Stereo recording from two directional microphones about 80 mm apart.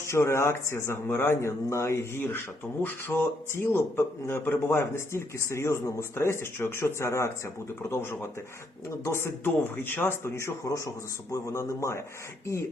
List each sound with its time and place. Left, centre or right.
0.0 s a man's voice: left